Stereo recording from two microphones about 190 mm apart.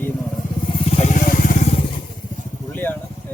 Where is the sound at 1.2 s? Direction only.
45° left (ahead or behind).